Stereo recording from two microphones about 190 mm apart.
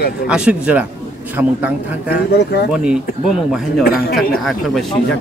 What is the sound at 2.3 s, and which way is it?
Speech, 60° left (ahead or behind).